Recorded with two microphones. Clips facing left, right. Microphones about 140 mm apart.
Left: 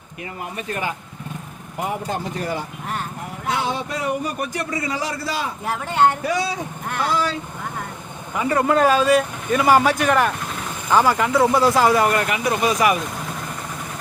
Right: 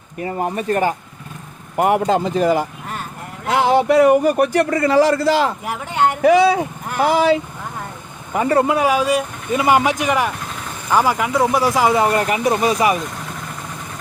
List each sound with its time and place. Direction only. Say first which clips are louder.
0.2 s speech: right 9 dB; 40° right (ahead or behind)
1.7 s speech: right 10 dB; 65° right (ahead or behind); by 2.6 s 90° right
3.5 s speech: right 11 dB; 70° right (ahead or behind)
6.2 s speech: right 11 dB; 70° right (ahead or behind)
8.4 s speech: right 5 dB; 40° right (ahead or behind)
8.6 s speech: even; 10° right (ahead or behind); by 13.0 s 30° right (ahead or behind)